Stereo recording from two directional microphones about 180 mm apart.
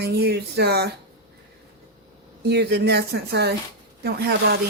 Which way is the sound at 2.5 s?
65° right (ahead or behind).